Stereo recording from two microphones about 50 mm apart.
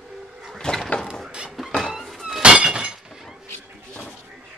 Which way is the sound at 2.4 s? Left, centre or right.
Centre.